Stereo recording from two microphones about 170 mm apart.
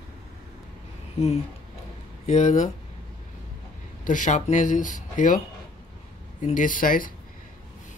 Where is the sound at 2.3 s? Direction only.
45° left (ahead or behind).